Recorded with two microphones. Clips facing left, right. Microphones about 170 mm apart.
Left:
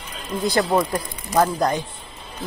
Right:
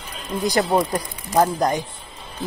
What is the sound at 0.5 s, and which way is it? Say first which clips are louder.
Speech: even; 20° right (ahead or behind).